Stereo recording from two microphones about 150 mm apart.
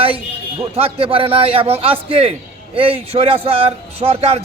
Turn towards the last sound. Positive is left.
turn(degrees=-40)  # may be behind; listen again after turning